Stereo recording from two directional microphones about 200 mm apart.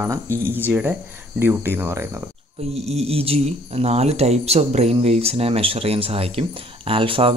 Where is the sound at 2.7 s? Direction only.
30° right (ahead or behind).